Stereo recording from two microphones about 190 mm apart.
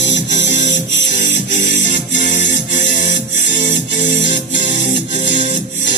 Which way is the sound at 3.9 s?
70° left (ahead or behind).